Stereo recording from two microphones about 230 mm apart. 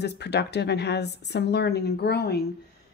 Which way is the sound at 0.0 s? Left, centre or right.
Left.